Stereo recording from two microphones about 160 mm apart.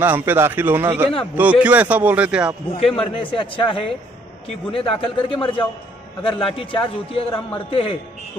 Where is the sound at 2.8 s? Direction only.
35° left (ahead or behind).